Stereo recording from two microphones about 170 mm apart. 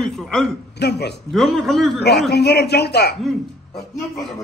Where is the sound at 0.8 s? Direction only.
75° left (ahead or behind).